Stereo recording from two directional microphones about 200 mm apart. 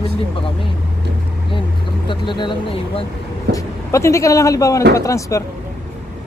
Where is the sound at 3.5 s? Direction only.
15° left (ahead or behind).